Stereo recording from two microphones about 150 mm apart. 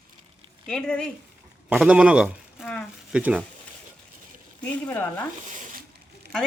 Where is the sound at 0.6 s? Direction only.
5° left (ahead or behind).